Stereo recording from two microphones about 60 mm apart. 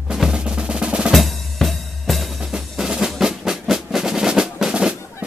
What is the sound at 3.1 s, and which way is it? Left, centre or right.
Percussion, centre.